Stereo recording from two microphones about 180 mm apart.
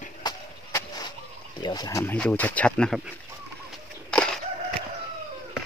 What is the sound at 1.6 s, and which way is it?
Speech, 25° left (ahead or behind).